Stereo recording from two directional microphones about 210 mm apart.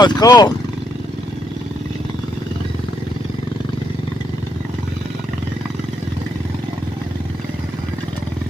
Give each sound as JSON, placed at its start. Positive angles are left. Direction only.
{"t": 0.0, "sound": "speech", "side_deg": 20}